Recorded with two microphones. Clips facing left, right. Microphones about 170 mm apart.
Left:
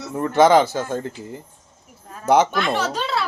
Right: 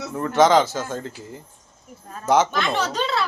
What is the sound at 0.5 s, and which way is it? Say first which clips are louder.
Speech: left 2 dB; 15° left (ahead or behind).